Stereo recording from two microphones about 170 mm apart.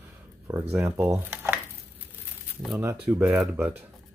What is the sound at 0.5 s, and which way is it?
Speech, 20° right (ahead or behind).